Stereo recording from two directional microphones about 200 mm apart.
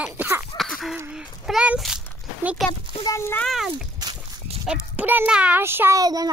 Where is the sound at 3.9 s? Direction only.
20° right (ahead or behind).